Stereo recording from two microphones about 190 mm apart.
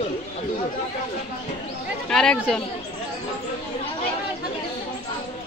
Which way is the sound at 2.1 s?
5° left (ahead or behind).